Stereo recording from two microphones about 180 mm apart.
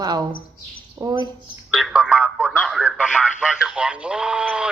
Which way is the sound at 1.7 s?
5° right (ahead or behind).